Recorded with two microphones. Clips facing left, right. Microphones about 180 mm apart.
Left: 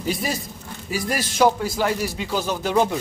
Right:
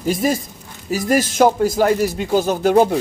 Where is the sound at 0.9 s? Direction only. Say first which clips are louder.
Right 8 dB; 45° right (ahead or behind).